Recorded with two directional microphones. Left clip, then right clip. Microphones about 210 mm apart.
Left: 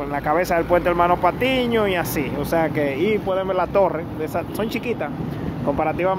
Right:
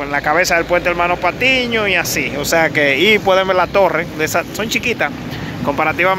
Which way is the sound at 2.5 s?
Centre (ahead or behind).